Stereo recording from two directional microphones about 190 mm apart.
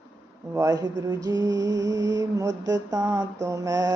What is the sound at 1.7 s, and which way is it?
Music, 70° right (ahead or behind).